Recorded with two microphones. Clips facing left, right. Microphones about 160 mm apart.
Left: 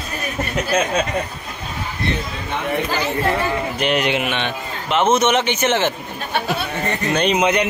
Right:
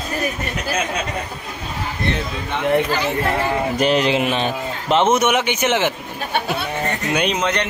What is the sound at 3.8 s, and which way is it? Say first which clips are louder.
A man's voice: right 3 dB; 35° right (ahead or behind).